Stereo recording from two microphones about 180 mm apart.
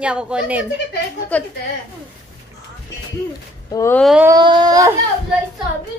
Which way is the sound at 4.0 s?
Centre (ahead or behind).